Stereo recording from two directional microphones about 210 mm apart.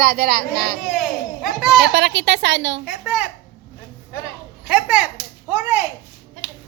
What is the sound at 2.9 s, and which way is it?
Speech, 5° right (ahead or behind).